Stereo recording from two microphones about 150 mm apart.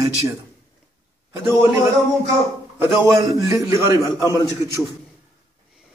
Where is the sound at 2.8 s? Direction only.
20° right (ahead or behind).